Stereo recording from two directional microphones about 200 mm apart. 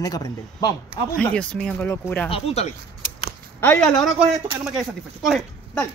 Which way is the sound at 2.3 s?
30° left (ahead or behind).